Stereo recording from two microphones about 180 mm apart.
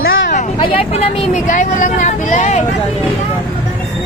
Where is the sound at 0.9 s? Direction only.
35° left (ahead or behind).